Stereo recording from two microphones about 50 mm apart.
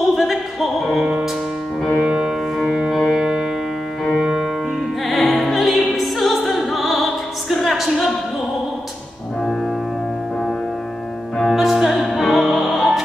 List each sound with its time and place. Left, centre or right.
0.1 s music: centre
2.0 s music: centre
5.0 s opera: centre
11.4 s opera: centre